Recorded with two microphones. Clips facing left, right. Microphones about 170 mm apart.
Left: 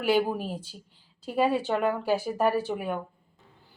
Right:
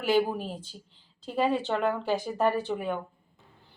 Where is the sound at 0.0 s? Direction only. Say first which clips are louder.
Left 1 dB; 10° left (ahead or behind).